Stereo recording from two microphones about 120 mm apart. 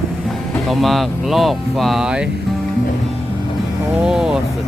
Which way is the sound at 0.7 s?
Centre (ahead or behind).